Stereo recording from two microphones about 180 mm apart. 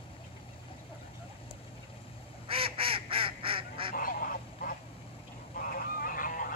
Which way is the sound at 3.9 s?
50° left (ahead or behind).